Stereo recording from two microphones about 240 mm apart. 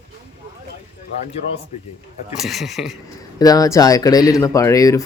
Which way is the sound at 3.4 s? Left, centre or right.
Centre.